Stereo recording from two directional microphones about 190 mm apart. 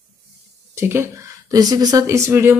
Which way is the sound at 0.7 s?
15° right (ahead or behind).